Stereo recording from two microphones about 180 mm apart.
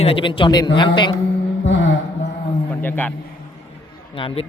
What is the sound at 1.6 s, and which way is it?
Mantra, 80° left.